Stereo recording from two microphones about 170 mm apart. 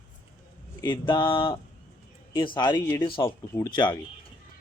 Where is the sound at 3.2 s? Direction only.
15° left (ahead or behind).